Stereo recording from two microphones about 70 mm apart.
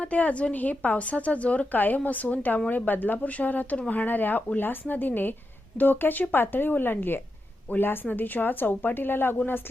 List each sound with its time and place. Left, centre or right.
0.0 s speech: centre